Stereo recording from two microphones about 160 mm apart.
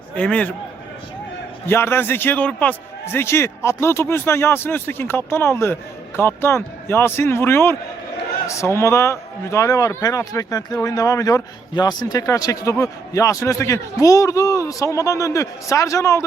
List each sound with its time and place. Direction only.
0.2 s a man's voice: 5° left (ahead or behind)
1.6 s a man's voice: 15° left (ahead or behind)